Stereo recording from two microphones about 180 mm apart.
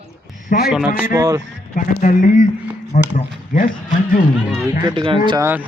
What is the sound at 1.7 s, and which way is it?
Speech, 45° left (ahead or behind).